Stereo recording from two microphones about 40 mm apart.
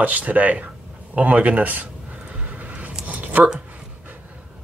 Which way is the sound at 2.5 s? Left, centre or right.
Right.